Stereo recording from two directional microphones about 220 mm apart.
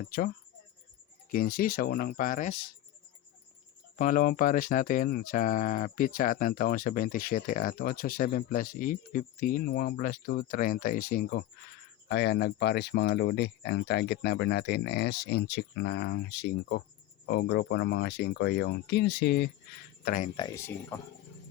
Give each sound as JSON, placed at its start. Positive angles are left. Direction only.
{"t": 0.0, "sound": "speech", "side_deg": 40}
{"t": 1.3, "sound": "speech", "side_deg": 40}
{"t": 3.9, "sound": "speech", "side_deg": 35}
{"t": 20.1, "sound": "speech", "side_deg": 35}
{"t": 20.3, "sound": "speech", "side_deg": 15}